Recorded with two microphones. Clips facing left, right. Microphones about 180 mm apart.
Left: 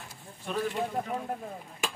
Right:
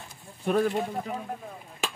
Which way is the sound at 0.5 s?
55° right (ahead or behind).